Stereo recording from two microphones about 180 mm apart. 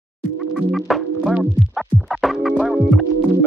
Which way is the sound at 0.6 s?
Centre (ahead or behind).